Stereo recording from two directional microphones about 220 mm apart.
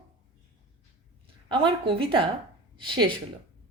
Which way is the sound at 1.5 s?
25° right (ahead or behind).